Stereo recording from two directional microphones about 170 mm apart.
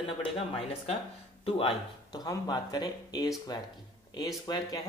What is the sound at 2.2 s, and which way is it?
Speech, 20° left (ahead or behind).